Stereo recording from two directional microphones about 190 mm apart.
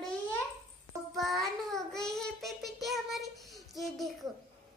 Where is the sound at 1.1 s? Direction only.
Centre (ahead or behind).